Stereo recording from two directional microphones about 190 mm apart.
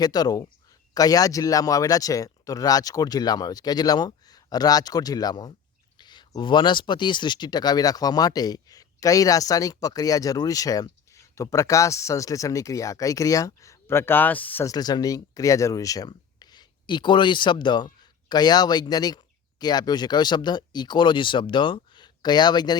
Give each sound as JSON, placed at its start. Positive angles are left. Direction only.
{"t": 0.0, "sound": "speech", "side_deg": 20}